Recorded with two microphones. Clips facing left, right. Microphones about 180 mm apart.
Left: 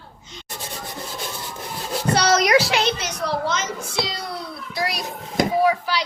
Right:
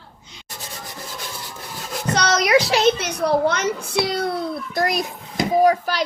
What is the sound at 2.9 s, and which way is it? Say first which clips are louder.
A child's voice: right 6 dB; 55° right (ahead or behind).